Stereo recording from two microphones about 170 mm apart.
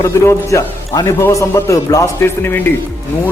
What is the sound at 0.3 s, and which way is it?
A man's voice, 15° left (ahead or behind).